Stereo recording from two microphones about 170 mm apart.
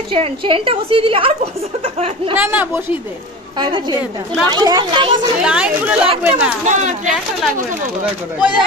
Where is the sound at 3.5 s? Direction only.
25° right (ahead or behind).